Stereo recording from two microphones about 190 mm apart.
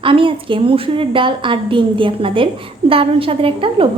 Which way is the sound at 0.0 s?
25° right (ahead or behind).